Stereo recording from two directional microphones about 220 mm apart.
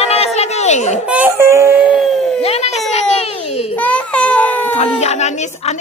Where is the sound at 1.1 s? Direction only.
10° right (ahead or behind).